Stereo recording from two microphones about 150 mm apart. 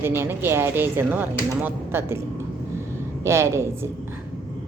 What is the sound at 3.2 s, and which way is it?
Speech, 20° right (ahead or behind).